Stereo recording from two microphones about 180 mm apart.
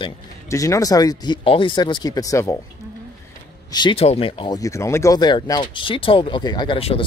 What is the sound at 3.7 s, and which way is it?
Speech, 25° left (ahead or behind).